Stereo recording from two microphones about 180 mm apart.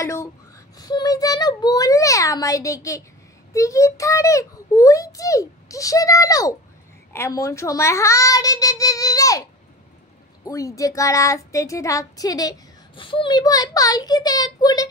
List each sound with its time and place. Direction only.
0.0 s a sound: 15° left (ahead or behind)
0.7 s child singing: 20° left (ahead or behind)
3.5 s a child's voice: 15° left (ahead or behind)
7.1 s child singing: 15° left (ahead or behind)
10.4 s child singing: 15° left (ahead or behind)